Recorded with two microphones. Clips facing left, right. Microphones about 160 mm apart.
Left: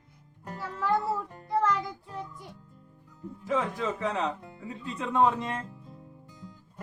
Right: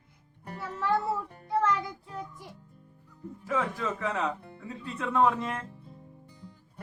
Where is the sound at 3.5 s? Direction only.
15° left (ahead or behind).